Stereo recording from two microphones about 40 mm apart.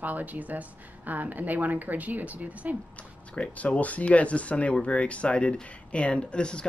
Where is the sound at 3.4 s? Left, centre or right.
Left.